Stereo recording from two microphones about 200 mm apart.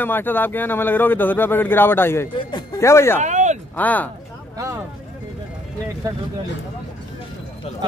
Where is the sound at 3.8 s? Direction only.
10° left (ahead or behind).